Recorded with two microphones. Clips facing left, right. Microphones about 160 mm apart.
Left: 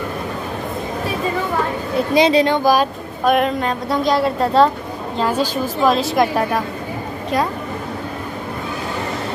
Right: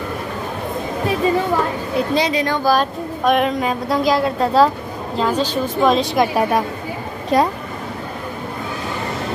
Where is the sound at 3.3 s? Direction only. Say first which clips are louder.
Even; centre (ahead or behind).